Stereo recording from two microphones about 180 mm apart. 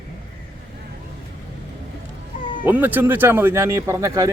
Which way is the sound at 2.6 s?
10° right (ahead or behind).